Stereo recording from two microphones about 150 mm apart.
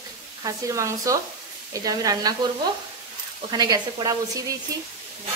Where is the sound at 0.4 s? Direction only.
20° right (ahead or behind).